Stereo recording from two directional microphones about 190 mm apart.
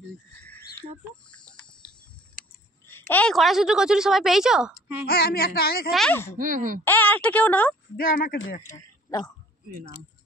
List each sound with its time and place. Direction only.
0.4 s owl: 10° left (ahead or behind)
1.3 s a sound: 5° left (ahead or behind)
3.1 s a woman's voice: 5° left (ahead or behind)
5.0 s a sound: 55° left (ahead or behind)
5.9 s a woman's voice: centre (ahead or behind)
6.3 s speech: 45° right (ahead or behind)
6.8 s a woman's voice: 10° left (ahead or behind)
8.0 s speech: 50° left (ahead or behind)
8.6 s speech: 20° left (ahead or behind)